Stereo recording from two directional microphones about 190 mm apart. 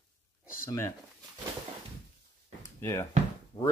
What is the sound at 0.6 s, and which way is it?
Speech, 15° left (ahead or behind).